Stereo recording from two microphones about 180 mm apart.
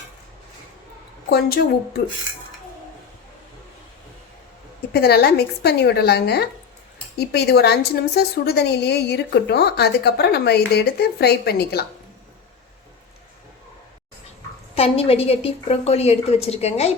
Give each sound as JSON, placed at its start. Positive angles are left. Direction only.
{"t": 1.3, "sound": "a woman's voice", "side_deg": 60}
{"t": 4.9, "sound": "a woman's voice", "side_deg": 65}
{"t": 14.8, "sound": "a woman's voice", "side_deg": 35}